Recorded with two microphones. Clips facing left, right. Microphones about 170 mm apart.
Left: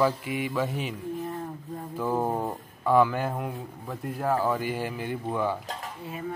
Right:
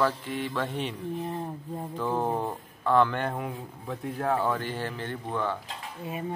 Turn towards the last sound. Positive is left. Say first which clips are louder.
# right 1 dB
turn(degrees=-20)  # may be behind; listen again after turning